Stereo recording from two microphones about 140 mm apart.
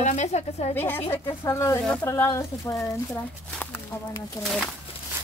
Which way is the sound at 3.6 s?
15° left (ahead or behind).